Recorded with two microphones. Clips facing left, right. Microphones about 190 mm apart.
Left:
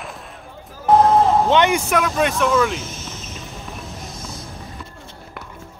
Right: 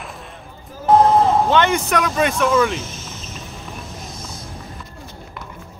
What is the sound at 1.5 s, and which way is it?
Speech, 15° left (ahead or behind).